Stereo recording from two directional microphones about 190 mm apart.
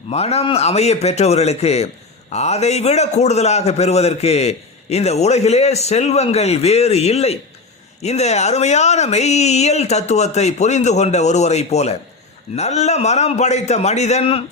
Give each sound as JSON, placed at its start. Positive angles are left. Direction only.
{"t": 0.1, "sound": "a man's voice", "side_deg": 35}